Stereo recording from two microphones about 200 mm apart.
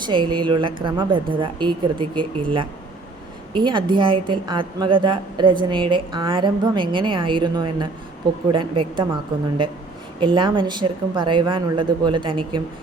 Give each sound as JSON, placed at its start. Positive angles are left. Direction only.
{"t": 0.0, "sound": "a woman's voice", "side_deg": -25}